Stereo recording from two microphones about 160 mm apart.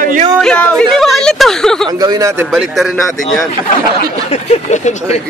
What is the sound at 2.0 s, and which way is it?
Speech, 25° right (ahead or behind).